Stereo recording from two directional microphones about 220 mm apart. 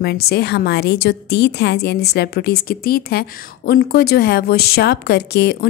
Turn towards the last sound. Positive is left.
turn(degrees=50)  # may be behind; listen again after turning